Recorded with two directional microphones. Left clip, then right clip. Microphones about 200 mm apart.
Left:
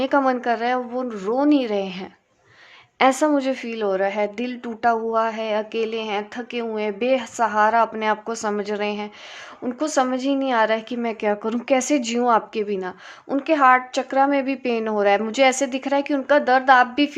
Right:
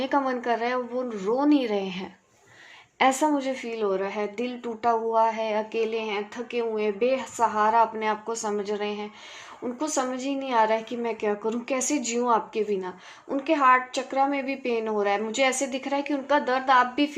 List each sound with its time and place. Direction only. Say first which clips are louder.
0.0 s a woman's voice: left 6 dB; 35° left (ahead or behind)